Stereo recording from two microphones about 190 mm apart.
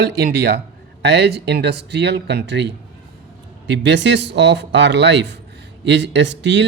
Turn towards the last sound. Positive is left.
turn(degrees=-70)  # may be behind; listen again after turning